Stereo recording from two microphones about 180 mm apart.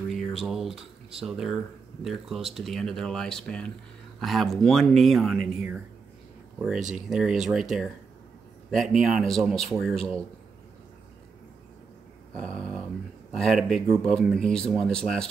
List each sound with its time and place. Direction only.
0.1 s speech: centre (ahead or behind)
6.8 s speech: 40° right (ahead or behind)
7.1 s speech: centre (ahead or behind)
12.4 s speech: 5° left (ahead or behind)